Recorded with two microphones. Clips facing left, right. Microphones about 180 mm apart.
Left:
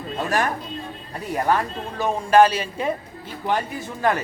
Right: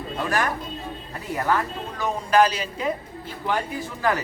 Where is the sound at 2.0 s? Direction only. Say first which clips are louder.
Left 4 dB; 25° left (ahead or behind).